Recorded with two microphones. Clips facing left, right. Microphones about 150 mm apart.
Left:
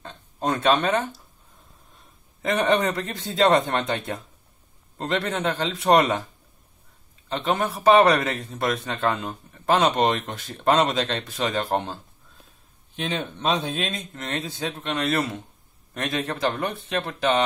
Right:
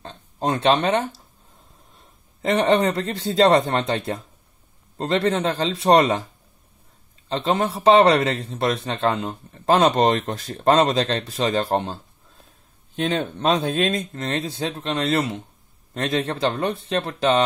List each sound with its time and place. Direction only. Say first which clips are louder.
0.0 s speech: right 2 dB; 30° right (ahead or behind)
2.4 s speech: right 3 dB; 30° right (ahead or behind)
7.2 s speech: right 3 dB; 30° right (ahead or behind)
9.7 s speech: right 3 dB; 35° right (ahead or behind)
13.0 s speech: right 5 dB; 45° right (ahead or behind)
14.1 s speech: right 4 dB; 35° right (ahead or behind)